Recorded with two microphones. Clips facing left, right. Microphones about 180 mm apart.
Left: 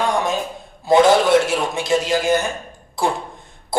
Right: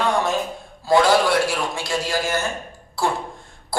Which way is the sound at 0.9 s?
20° left (ahead or behind).